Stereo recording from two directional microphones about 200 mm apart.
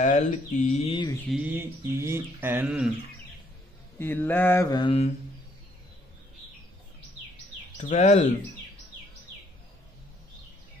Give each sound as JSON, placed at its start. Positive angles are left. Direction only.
{"t": 0.0, "sound": "mantra", "side_deg": 35}
{"t": 1.3, "sound": "bird", "side_deg": -10}
{"t": 4.0, "sound": "mantra", "side_deg": 10}
{"t": 7.7, "sound": "speech", "side_deg": 35}